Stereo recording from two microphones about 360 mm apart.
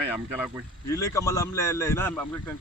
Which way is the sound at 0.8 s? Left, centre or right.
Centre.